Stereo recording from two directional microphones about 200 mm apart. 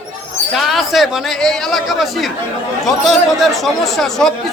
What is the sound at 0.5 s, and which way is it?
Speech, centre (ahead or behind).